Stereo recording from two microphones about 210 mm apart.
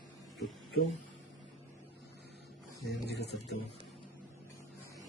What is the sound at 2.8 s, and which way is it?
Speech, 50° left (ahead or behind).